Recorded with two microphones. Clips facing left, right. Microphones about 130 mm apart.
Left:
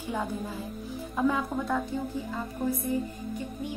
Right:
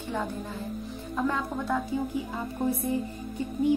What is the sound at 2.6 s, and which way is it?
Music, 25° right (ahead or behind).